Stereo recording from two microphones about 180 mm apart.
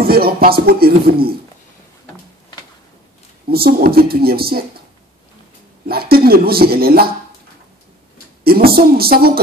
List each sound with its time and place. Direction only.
0.0 s music: 55° right (ahead or behind)
3.4 s music: 60° right (ahead or behind)
5.9 s music: 60° right (ahead or behind)
8.5 s music: 55° right (ahead or behind)